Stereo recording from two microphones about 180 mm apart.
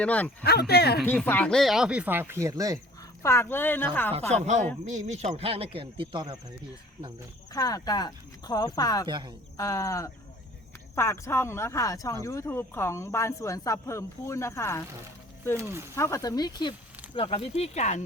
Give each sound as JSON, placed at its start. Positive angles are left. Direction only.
{"t": 0.0, "sound": "speech", "side_deg": 10}
{"t": 0.7, "sound": "speech", "side_deg": 60}
{"t": 1.0, "sound": "speech", "side_deg": 10}
{"t": 3.2, "sound": "speech", "side_deg": 15}
{"t": 4.9, "sound": "speech", "side_deg": -40}
{"t": 7.5, "sound": "speech", "side_deg": 20}
{"t": 9.0, "sound": "a woman's voice", "side_deg": -25}
{"t": 9.6, "sound": "speech", "side_deg": 20}
{"t": 15.5, "sound": "speech", "side_deg": -15}
{"t": 16.0, "sound": "speech", "side_deg": 15}